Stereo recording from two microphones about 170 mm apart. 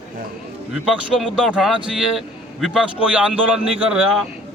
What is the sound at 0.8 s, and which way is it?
A man's voice, centre (ahead or behind).